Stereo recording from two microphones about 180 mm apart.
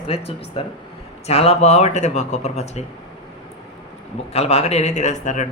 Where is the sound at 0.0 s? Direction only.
35° left (ahead or behind).